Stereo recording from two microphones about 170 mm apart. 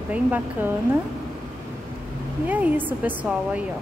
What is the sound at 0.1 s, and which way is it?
Speech, 10° right (ahead or behind).